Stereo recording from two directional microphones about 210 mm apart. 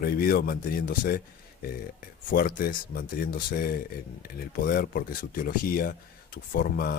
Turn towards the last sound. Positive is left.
turn(degrees=45)  # may be behind; listen again after turning